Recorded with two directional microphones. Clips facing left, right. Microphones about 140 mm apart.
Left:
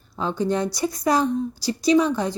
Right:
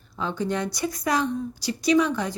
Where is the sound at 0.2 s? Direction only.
35° left (ahead or behind).